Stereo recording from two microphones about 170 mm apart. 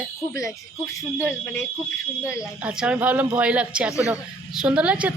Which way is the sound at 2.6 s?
5° right (ahead or behind).